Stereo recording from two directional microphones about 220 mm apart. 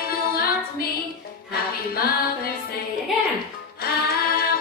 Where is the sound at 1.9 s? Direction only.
45° left (ahead or behind).